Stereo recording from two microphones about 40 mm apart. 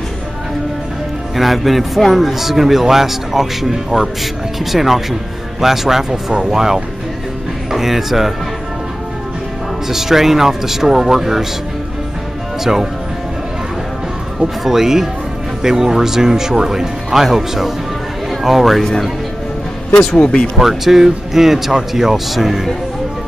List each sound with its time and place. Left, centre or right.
1.3 s a man's voice: centre
9.8 s speech: centre
14.4 s a man's voice: centre
20.2 s speech: left
20.5 s speech: centre